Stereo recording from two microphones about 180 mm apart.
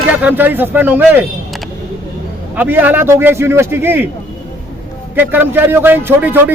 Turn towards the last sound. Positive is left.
turn(degrees=-10)  # may be behind; listen again after turning